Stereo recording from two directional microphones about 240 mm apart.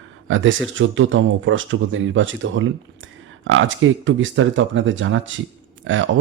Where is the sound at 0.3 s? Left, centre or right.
Right.